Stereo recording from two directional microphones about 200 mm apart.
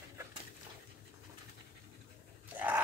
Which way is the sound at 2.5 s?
10° right (ahead or behind).